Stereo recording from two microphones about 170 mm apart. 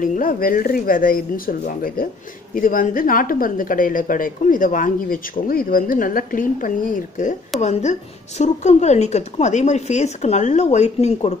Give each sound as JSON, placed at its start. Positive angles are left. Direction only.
{"t": 0.0, "sound": "a woman's voice", "side_deg": 50}